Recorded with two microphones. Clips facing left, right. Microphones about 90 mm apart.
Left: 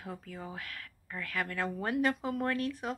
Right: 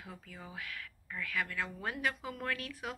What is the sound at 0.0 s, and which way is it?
Speech, 40° left (ahead or behind).